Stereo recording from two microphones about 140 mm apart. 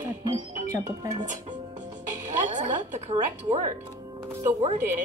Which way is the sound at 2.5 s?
60° right (ahead or behind).